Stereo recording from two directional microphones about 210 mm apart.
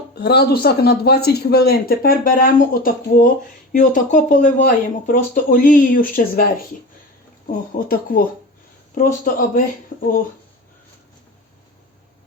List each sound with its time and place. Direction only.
0.1 s speech: 50° left (ahead or behind)